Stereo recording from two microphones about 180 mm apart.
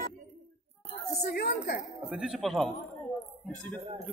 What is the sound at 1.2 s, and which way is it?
Speech, 55° left (ahead or behind).